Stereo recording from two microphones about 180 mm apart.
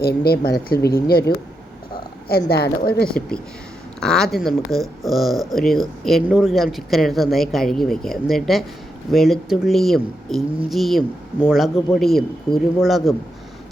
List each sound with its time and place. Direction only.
0.0 s a woman's voice: 60° left (ahead or behind)
2.3 s a woman's voice: 60° left (ahead or behind)
4.0 s speech: 5° left (ahead or behind)